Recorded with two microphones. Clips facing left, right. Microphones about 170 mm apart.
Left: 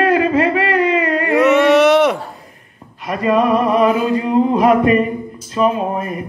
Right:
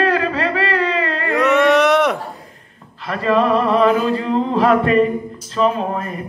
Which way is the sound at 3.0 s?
15° left (ahead or behind).